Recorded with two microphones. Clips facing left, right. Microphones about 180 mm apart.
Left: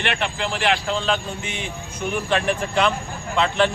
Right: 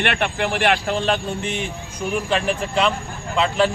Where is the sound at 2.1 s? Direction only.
Centre (ahead or behind).